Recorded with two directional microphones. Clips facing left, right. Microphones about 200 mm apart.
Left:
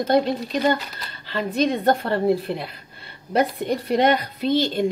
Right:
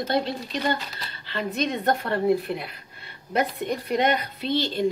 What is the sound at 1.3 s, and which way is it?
A woman's voice, 35° left (ahead or behind).